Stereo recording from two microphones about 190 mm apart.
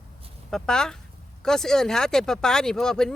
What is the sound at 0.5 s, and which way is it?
Speech, 5° left (ahead or behind).